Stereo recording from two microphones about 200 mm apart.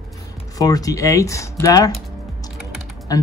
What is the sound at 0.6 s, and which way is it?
Speech, 20° left (ahead or behind).